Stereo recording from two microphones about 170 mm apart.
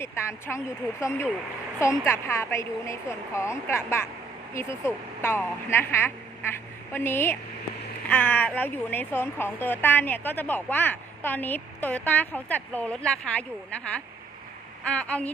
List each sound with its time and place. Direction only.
0.0 s speech: 15° left (ahead or behind)
14.8 s speech: 10° left (ahead or behind)